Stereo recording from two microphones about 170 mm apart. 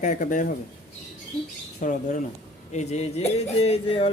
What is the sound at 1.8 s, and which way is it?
Speech, 50° left (ahead or behind).